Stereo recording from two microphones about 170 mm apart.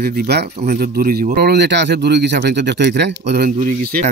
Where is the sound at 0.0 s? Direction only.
65° right (ahead or behind).